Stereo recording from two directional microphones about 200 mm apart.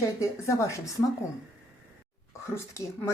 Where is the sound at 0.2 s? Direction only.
15° left (ahead or behind).